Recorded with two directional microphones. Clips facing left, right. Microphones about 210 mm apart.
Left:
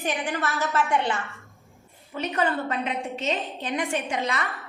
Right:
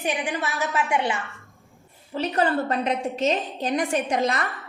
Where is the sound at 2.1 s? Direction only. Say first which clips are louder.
Right 3 dB; 35° right (ahead or behind).